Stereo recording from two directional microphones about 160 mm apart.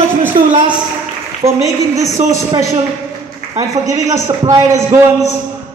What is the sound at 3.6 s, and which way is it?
A man's voice, 20° right (ahead or behind).